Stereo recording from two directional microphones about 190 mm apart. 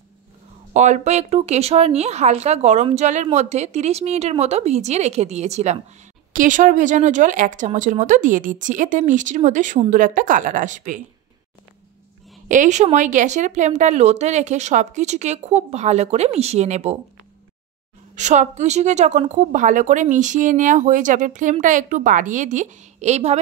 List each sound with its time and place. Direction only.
0.7 s a woman's voice: 35° right (ahead or behind)
12.4 s a woman's voice: 40° right (ahead or behind)
18.1 s a woman's voice: 40° right (ahead or behind)